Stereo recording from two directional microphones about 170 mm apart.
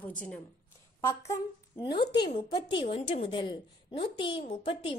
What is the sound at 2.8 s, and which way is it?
A woman's voice, 35° left (ahead or behind).